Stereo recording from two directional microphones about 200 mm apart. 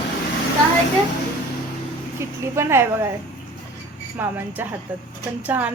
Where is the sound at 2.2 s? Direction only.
15° right (ahead or behind).